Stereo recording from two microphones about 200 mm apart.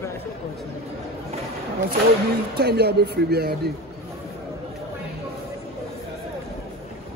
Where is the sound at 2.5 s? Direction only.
55° right (ahead or behind).